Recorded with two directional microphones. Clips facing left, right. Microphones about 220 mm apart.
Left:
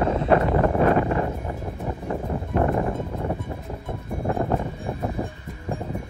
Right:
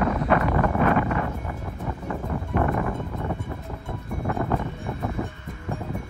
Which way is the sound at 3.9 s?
25° left (ahead or behind).